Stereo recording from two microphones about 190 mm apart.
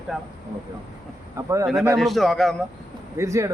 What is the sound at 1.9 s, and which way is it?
Speech, centre (ahead or behind).